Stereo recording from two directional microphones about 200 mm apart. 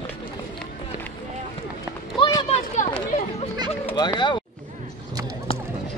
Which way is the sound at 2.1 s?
20° left (ahead or behind).